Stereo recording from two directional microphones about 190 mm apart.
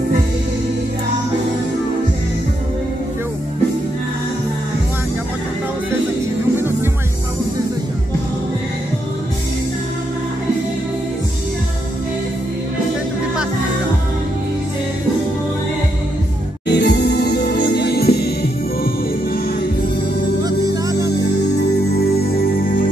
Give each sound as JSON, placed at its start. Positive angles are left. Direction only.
{"t": 16.6, "sound": "music", "side_deg": 60}
{"t": 20.4, "sound": "music", "side_deg": -20}
{"t": 21.2, "sound": "music", "side_deg": 60}